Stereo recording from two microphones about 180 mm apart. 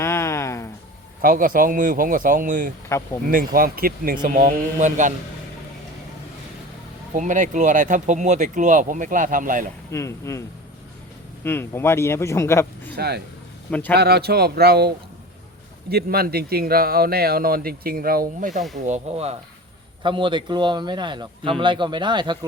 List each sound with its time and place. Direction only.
0.0 s a sound: 15° left (ahead or behind)
1.2 s speech: 50° right (ahead or behind)
7.1 s speech: 45° right (ahead or behind)
9.9 s speech: 15° left (ahead or behind)
11.4 s speech: 15° left (ahead or behind)
13.0 s speech: 65° right (ahead or behind)
13.7 s speech: 10° left (ahead or behind)
13.9 s a man's voice: 60° right (ahead or behind); by 22.4 s 25° right (ahead or behind)